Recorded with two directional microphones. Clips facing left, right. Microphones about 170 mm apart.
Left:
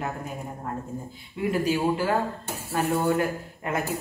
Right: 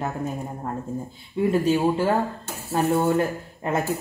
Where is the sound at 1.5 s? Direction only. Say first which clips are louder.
Right 3 dB; 25° right (ahead or behind).